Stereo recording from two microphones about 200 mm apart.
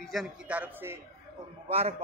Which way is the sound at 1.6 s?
30° right (ahead or behind).